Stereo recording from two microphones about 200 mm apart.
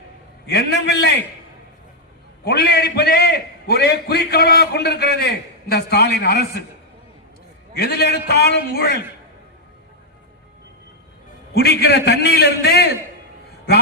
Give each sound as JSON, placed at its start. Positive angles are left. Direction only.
{"t": 0.4, "sound": "a man's voice", "side_deg": 55}
{"t": 2.4, "sound": "a man's voice", "side_deg": 55}
{"t": 7.8, "sound": "a man's voice", "side_deg": 50}
{"t": 11.5, "sound": "a man's voice", "side_deg": 55}